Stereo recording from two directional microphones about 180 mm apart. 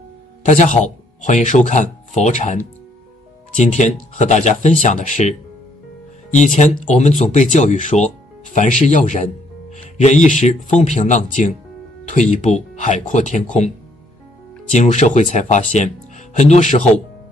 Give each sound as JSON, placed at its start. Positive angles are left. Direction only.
{"t": 0.5, "sound": "speech", "side_deg": 40}
{"t": 6.3, "sound": "speech", "side_deg": 40}
{"t": 14.7, "sound": "speech", "side_deg": 40}